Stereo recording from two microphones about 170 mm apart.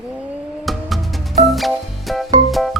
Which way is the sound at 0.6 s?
Centre (ahead or behind).